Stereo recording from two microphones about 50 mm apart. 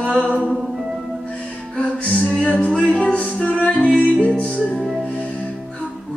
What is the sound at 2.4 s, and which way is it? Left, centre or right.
Music, left.